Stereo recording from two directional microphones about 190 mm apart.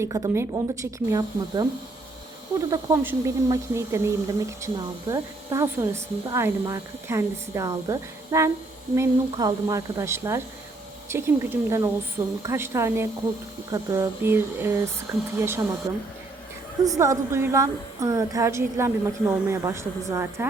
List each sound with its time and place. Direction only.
0.0 s speech: 15° right (ahead or behind)
2.6 s speech: 15° right (ahead or behind)
16.8 s speech: 15° right (ahead or behind)